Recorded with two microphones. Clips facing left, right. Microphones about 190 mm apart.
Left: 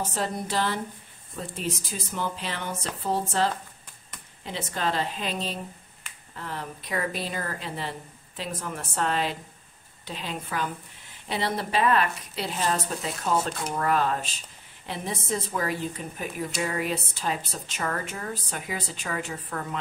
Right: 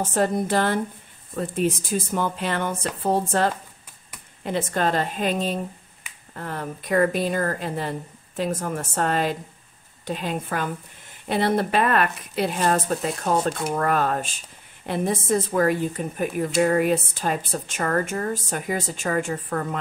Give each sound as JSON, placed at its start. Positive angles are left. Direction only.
{"t": 0.0, "sound": "a woman's voice", "side_deg": -50}
{"t": 1.9, "sound": "a woman's voice", "side_deg": -50}